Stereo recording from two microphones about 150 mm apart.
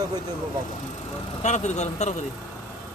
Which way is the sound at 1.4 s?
50° left (ahead or behind).